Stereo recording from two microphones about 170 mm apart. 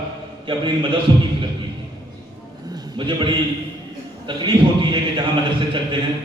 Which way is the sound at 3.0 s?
25° right (ahead or behind).